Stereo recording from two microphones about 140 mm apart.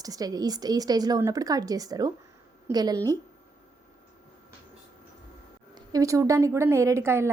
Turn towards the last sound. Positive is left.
turn(degrees=-20)  # may be behind; listen again after turning